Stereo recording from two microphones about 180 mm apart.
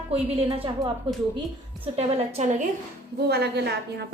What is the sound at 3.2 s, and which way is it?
Speech, 65° right (ahead or behind).